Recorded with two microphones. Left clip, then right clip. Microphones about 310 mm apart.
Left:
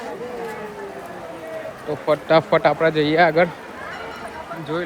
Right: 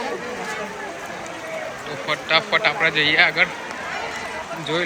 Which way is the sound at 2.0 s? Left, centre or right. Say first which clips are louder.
Left 3 dB; centre.